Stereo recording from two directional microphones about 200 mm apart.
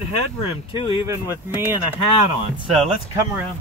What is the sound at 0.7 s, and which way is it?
Speech, 25° left (ahead or behind).